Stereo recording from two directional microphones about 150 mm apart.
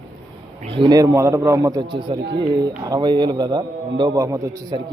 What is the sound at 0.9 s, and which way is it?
A man's voice, 20° right (ahead or behind).